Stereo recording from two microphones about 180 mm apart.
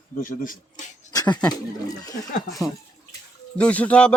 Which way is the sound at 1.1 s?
20° left (ahead or behind).